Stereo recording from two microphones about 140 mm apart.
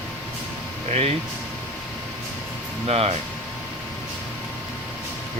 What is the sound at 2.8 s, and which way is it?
Speech, 45° right (ahead or behind).